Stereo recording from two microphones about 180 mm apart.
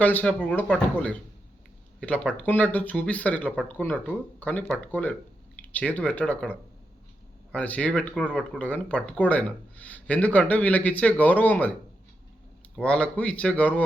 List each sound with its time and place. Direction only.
0.0 s speech: 10° left (ahead or behind)
12.7 s speech: 5° left (ahead or behind)